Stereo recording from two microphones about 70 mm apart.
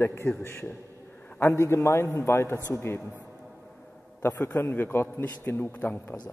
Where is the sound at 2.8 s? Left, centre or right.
Left.